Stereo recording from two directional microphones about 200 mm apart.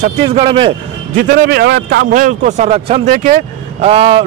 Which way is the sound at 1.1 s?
55° right (ahead or behind).